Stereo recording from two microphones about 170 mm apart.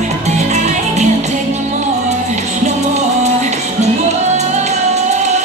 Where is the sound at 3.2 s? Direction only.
40° right (ahead or behind).